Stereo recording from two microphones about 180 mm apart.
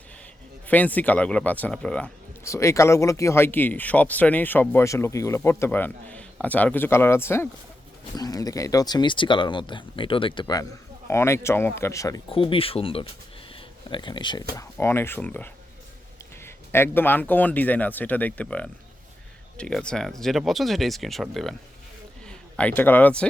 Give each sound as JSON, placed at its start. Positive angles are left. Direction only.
{"t": 0.7, "sound": "speech", "side_deg": 10}
{"t": 2.4, "sound": "speech", "side_deg": 15}
{"t": 12.3, "sound": "speech", "side_deg": 30}
{"t": 13.5, "sound": "a sound", "side_deg": 30}
{"t": 14.5, "sound": "a man's voice", "side_deg": 15}